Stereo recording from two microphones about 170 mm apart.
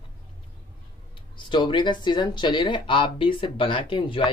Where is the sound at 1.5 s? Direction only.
30° left (ahead or behind).